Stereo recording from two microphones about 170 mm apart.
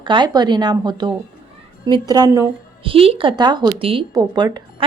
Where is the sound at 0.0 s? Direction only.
25° right (ahead or behind).